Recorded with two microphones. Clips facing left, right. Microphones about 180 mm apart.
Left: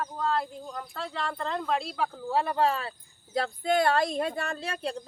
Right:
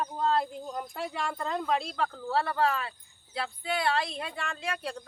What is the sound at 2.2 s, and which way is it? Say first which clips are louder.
Speech: left 2 dB; 15° left (ahead or behind).